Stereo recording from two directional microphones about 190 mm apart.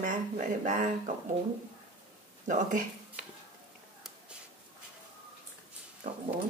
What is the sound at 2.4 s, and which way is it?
Speech, 45° right (ahead or behind).